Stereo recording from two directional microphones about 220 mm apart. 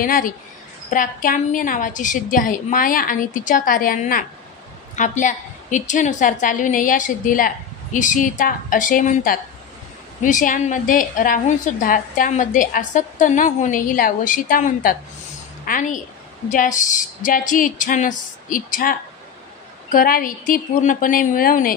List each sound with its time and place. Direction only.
0.0 s a woman's voice: 40° left (ahead or behind)